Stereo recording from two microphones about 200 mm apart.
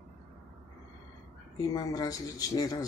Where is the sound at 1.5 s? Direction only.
20° left (ahead or behind).